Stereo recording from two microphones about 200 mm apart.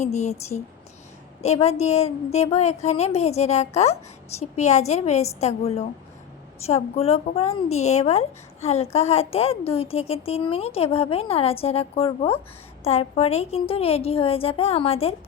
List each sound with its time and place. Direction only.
0.0 s a woman's voice: 35° left (ahead or behind)